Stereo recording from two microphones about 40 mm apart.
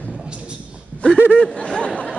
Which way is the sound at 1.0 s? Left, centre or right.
Left.